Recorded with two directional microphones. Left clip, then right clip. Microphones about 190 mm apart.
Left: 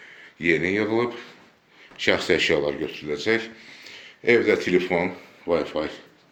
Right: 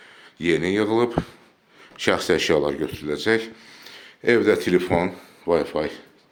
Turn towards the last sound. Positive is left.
turn(degrees=-45)  # may be behind; listen again after turning